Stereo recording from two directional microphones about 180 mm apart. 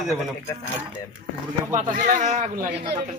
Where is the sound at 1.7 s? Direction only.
45° right (ahead or behind).